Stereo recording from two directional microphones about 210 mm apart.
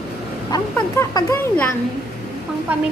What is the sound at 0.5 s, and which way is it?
Speech, 15° left (ahead or behind).